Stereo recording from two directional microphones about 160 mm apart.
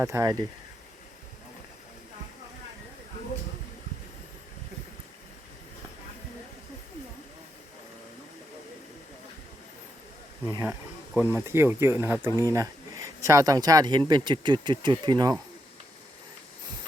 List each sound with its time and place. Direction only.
0.0 s speech: 20° right (ahead or behind)
10.4 s speech: 15° right (ahead or behind)